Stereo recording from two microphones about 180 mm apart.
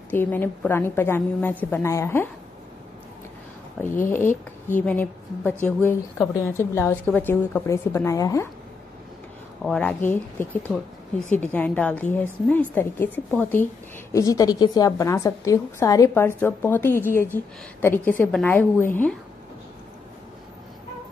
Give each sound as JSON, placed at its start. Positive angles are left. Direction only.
{"t": 0.1, "sound": "a woman's voice", "side_deg": 10}
{"t": 3.8, "sound": "a woman's voice", "side_deg": 15}
{"t": 9.6, "sound": "speech", "side_deg": 5}
{"t": 11.3, "sound": "a woman's voice", "side_deg": 10}